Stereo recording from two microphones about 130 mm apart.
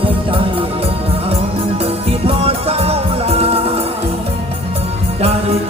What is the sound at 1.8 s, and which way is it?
Music, 50° right (ahead or behind).